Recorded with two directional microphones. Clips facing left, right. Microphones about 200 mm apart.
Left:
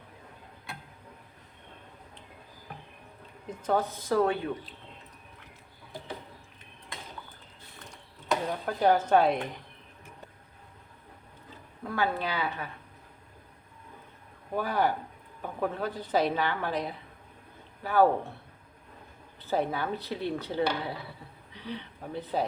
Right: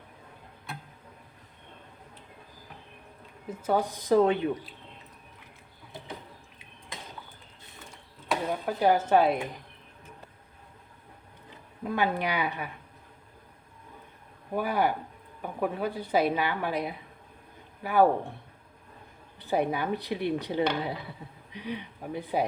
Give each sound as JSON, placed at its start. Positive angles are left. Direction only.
{"t": 3.5, "sound": "a woman's voice", "side_deg": -10}
{"t": 8.6, "sound": "a woman's voice", "side_deg": -5}
{"t": 11.8, "sound": "a woman's voice", "side_deg": -20}
{"t": 14.5, "sound": "a woman's voice", "side_deg": -10}
{"t": 19.4, "sound": "a woman's voice", "side_deg": -15}